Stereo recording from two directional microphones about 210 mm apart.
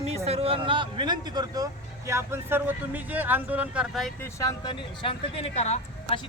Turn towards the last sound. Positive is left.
turn(degrees=30)  # may be behind; listen again after turning